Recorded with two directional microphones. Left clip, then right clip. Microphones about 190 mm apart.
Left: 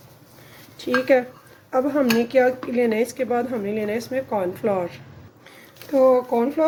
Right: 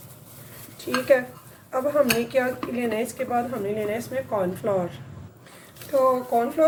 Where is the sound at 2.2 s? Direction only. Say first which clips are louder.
Left 5 dB; 55° left (ahead or behind).